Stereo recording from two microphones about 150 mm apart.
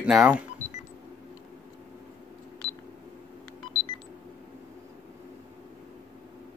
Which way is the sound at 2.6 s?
40° left (ahead or behind).